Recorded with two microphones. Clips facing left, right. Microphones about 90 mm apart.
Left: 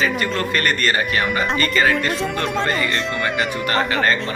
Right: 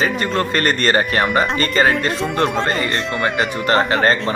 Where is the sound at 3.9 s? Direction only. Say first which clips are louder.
Right 3 dB; 35° right (ahead or behind).